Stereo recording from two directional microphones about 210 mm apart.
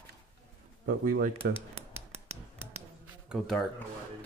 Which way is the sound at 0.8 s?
45° right (ahead or behind).